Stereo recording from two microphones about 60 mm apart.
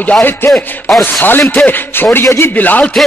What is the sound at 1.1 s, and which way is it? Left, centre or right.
Speech, left.